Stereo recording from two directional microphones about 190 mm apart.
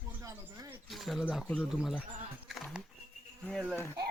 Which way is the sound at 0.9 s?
Centre (ahead or behind).